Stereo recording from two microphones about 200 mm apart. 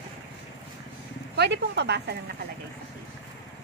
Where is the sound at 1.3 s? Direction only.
55° right (ahead or behind).